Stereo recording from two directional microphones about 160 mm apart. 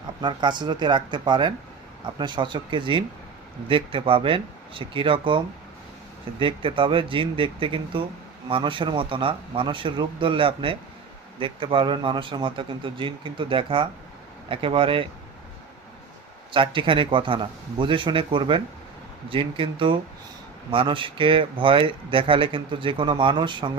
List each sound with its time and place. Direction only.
0.2 s speech: 30° right (ahead or behind)
6.4 s speech: 35° right (ahead or behind)
16.5 s speech: 30° right (ahead or behind)